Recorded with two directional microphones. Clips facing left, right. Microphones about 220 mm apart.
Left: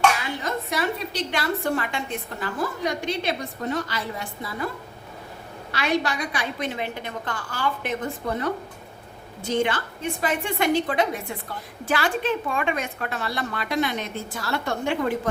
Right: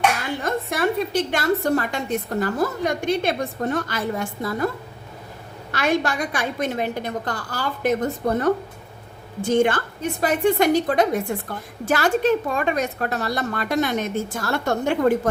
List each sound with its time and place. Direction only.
0.4 s a woman's voice: 50° right (ahead or behind)
5.7 s a woman's voice: 50° right (ahead or behind)